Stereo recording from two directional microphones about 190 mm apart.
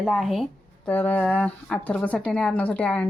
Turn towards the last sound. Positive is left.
turn(degrees=5)  # may be behind; listen again after turning